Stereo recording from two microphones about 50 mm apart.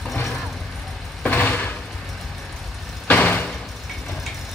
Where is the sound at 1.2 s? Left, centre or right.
Left.